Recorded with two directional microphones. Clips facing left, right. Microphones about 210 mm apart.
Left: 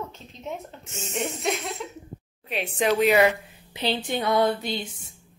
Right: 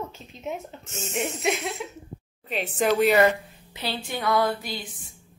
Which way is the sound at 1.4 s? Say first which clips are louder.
Right 1 dB; 5° right (ahead or behind).